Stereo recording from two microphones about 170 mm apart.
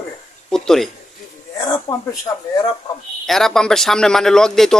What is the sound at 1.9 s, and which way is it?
Speech, 20° left (ahead or behind).